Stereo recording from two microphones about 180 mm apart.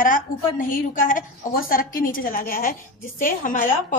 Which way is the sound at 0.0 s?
50° left (ahead or behind).